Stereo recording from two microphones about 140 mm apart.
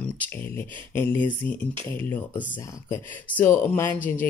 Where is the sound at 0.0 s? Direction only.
15° left (ahead or behind).